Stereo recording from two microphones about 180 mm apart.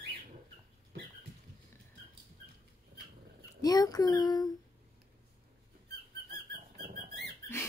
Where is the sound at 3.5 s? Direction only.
20° left (ahead or behind).